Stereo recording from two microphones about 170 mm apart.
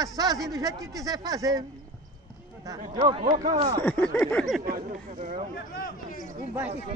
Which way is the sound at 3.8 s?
10° left (ahead or behind).